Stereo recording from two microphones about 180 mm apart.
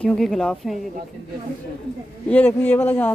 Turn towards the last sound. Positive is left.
turn(degrees=10)  # may be behind; listen again after turning